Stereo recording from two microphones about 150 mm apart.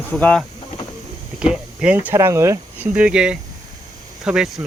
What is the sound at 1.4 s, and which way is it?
Vehicle, 5° right (ahead or behind).